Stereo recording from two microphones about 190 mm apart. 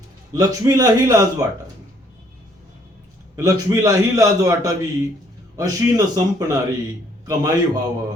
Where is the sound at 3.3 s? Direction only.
15° right (ahead or behind).